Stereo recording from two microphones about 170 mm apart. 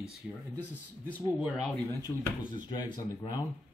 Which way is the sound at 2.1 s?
15° left (ahead or behind).